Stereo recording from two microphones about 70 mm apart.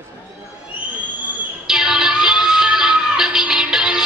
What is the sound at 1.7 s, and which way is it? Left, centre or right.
Music, centre.